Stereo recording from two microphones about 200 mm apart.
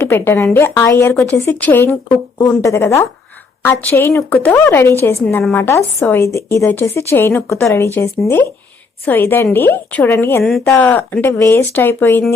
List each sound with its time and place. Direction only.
0.0 s speech: 10° left (ahead or behind)